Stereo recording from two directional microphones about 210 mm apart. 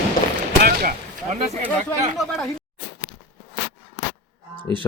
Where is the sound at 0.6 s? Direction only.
45° right (ahead or behind).